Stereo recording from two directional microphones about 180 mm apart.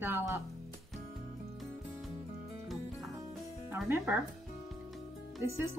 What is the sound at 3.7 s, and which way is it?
Speech, 10° right (ahead or behind).